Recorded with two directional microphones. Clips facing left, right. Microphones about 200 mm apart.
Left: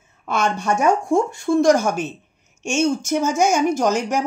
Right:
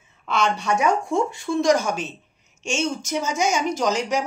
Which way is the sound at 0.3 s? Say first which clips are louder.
Left 1 dB; 50° left (ahead or behind).